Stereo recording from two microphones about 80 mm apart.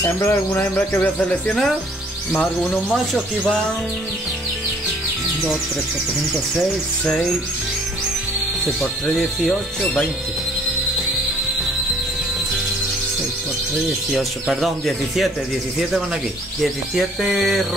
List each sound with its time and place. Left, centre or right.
0.0 s speech: left
1.0 s speech: centre
2.9 s speech: centre
14.1 s speech: centre
16.6 s speech: centre